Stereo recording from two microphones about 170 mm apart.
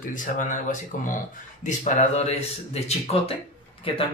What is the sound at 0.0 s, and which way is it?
Speech, 50° left (ahead or behind).